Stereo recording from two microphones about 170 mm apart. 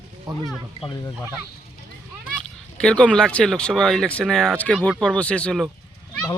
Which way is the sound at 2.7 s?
5° left (ahead or behind).